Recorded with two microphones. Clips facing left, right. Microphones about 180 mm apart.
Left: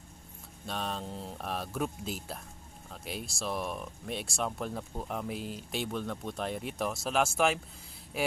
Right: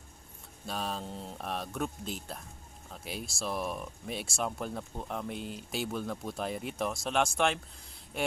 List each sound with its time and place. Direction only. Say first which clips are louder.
0.7 s speech: even; centre (ahead or behind)